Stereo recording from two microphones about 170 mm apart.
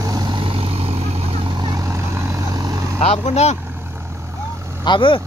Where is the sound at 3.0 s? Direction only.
40° left (ahead or behind).